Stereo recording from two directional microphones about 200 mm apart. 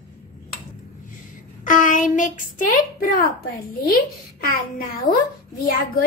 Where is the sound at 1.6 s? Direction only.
40° left (ahead or behind).